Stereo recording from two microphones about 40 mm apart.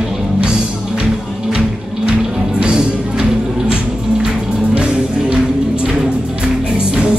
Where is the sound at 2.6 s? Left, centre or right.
Right.